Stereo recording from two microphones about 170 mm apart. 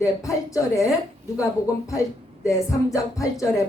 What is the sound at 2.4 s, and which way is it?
A woman's voice, 20° left (ahead or behind).